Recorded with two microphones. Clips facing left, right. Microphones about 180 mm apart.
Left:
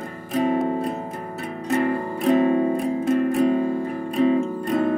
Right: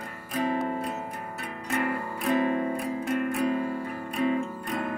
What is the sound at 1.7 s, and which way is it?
Music, 30° left (ahead or behind).